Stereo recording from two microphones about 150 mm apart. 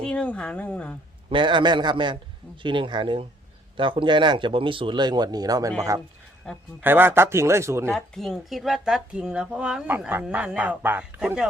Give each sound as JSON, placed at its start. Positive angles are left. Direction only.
{"t": 0.0, "sound": "speech", "side_deg": 5}
{"t": 1.3, "sound": "speech", "side_deg": -35}
{"t": 6.5, "sound": "speech", "side_deg": 5}
{"t": 6.8, "sound": "speech", "side_deg": -15}
{"t": 7.9, "sound": "speech", "side_deg": 5}